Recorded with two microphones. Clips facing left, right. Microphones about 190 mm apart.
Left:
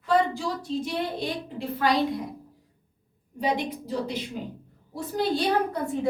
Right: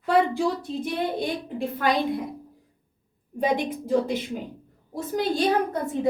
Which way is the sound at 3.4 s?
50° right (ahead or behind).